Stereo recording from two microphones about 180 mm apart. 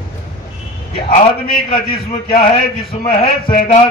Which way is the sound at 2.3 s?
30° left (ahead or behind).